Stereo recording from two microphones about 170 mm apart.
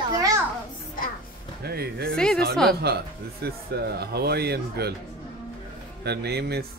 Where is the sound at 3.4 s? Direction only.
70° right (ahead or behind).